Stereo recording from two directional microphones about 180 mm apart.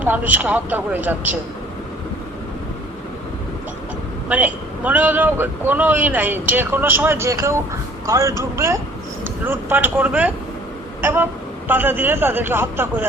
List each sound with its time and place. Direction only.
0.0 s a man's voice: 10° right (ahead or behind)
4.3 s a man's voice: 10° right (ahead or behind)
11.0 s a sound: 10° right (ahead or behind)
11.7 s a man's voice: 10° right (ahead or behind)